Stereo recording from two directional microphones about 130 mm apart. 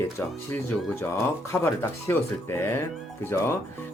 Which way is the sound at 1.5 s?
20° left (ahead or behind).